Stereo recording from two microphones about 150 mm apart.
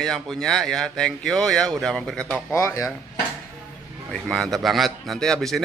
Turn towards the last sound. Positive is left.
turn(degrees=0)  # may be behind; listen again after turning